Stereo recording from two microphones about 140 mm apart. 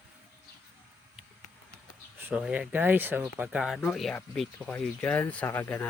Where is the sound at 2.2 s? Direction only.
10° right (ahead or behind).